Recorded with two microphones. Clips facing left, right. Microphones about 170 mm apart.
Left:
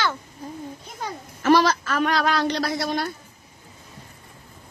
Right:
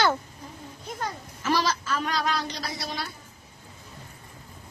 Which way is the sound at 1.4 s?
60° left (ahead or behind).